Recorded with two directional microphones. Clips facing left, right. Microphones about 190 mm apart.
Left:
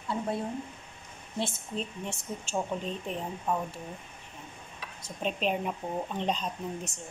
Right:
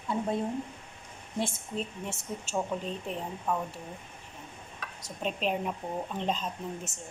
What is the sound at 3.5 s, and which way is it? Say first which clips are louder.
Speech: left 1 dB; 5° left (ahead or behind).